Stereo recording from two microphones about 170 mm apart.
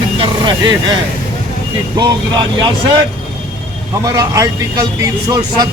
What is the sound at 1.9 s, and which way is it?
Speech, 25° right (ahead or behind).